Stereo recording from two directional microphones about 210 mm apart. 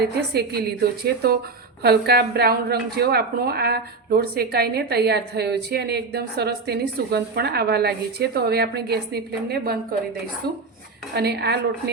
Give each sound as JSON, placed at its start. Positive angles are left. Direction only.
{"t": 0.0, "sound": "a woman's voice", "side_deg": -50}
{"t": 11.1, "sound": "a woman's voice", "side_deg": -50}